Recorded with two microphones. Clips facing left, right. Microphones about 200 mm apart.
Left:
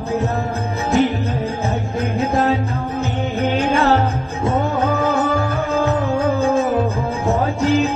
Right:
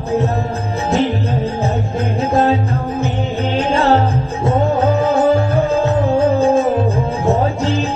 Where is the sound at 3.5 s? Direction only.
30° right (ahead or behind).